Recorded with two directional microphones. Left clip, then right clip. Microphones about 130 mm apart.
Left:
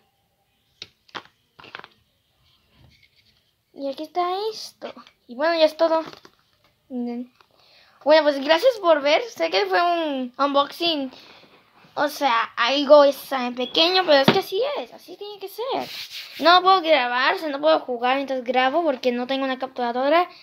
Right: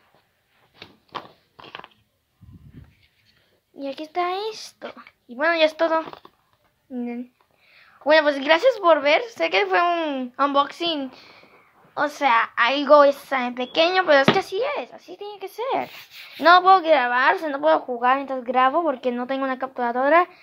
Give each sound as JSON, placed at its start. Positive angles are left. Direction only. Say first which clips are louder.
{"t": 0.7, "sound": "a sound", "louder": "right 1 dB", "side_deg": 0}
{"t": 3.7, "sound": "a woman's voice", "louder": "left 1 dB", "side_deg": 0}
{"t": 6.0, "sound": "speech", "louder": "right 2 dB", "side_deg": 25}
{"t": 6.9, "sound": "a woman's voice", "louder": "left 1 dB", "side_deg": 5}
{"t": 15.0, "sound": "speech", "louder": "right 1 dB", "side_deg": -15}
{"t": 16.3, "sound": "speech", "louder": "right 2 dB", "side_deg": 10}
{"t": 16.8, "sound": "speech", "louder": "right 1 dB", "side_deg": -10}
{"t": 17.5, "sound": "speech", "louder": "even", "side_deg": -5}
{"t": 18.2, "sound": "a woman's voice", "louder": "right 1 dB", "side_deg": 20}
{"t": 19.2, "sound": "a woman's voice", "louder": "even", "side_deg": 5}